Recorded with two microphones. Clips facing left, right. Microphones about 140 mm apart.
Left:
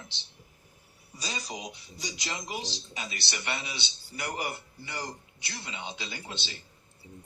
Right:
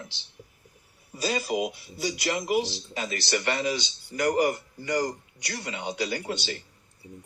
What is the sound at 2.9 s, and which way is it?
A man's voice, 45° right (ahead or behind).